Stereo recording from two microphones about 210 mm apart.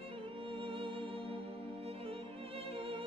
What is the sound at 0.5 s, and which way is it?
Music, 25° right (ahead or behind).